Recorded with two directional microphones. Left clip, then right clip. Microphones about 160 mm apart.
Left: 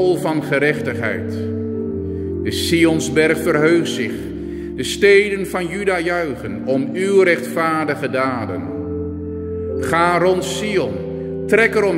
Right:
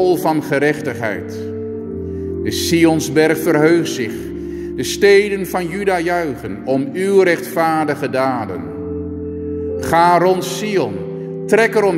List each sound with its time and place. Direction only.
0.0 s speech: 20° right (ahead or behind)
2.4 s speech: 20° right (ahead or behind)
9.8 s speech: 25° right (ahead or behind)